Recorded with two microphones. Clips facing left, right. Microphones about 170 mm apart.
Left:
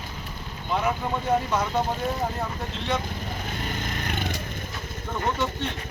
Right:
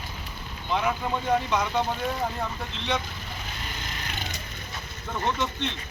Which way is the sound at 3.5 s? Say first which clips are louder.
Left 6 dB; 50° left (ahead or behind).